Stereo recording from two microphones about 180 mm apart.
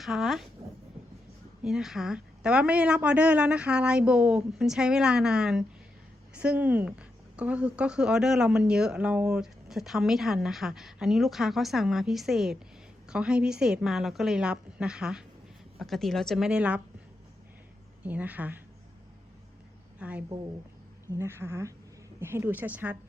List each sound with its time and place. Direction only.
0.0 s speech: centre (ahead or behind)
1.6 s speech: centre (ahead or behind)
18.0 s a woman's voice: 10° right (ahead or behind)
20.0 s a woman's voice: 10° right (ahead or behind)